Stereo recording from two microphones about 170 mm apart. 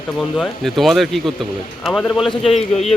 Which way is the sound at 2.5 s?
40° left (ahead or behind).